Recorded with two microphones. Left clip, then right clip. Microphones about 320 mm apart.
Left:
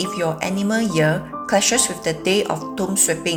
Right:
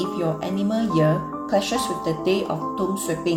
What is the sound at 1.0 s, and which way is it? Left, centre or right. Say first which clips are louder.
Speech: left 2 dB; left.